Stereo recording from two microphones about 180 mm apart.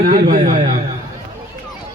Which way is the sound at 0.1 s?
45° right (ahead or behind).